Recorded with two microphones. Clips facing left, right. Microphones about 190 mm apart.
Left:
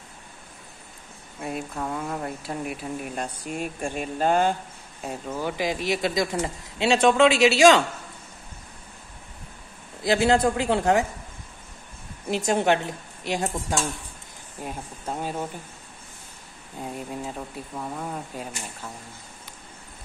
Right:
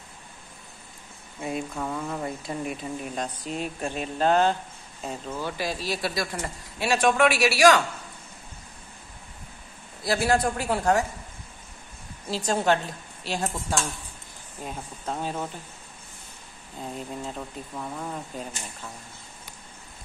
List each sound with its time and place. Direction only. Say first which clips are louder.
1.4 s speech: even; centre (ahead or behind); by 7.8 s 25° left (ahead or behind)
10.0 s speech: left 3 dB; 20° left (ahead or behind)
12.3 s speech: left 2 dB; 20° left (ahead or behind)
16.8 s speech: left 1 dB; 10° left (ahead or behind)